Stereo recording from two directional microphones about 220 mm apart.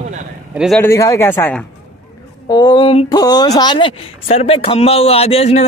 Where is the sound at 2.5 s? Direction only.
20° left (ahead or behind).